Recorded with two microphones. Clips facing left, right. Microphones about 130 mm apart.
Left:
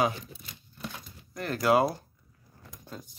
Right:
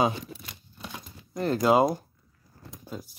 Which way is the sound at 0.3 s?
90° right.